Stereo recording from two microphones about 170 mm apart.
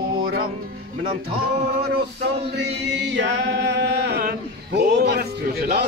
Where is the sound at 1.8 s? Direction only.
75° right (ahead or behind).